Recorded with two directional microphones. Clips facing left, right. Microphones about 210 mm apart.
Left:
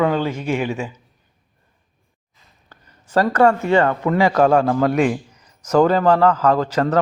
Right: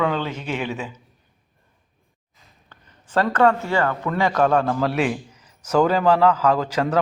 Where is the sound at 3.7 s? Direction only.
25° left (ahead or behind).